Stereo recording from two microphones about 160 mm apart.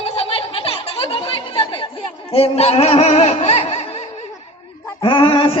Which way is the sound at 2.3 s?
40° left (ahead or behind).